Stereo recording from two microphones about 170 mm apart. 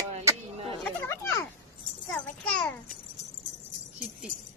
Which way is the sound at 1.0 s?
15° left (ahead or behind).